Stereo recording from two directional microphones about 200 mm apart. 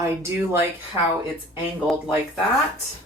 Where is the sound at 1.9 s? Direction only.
5° right (ahead or behind).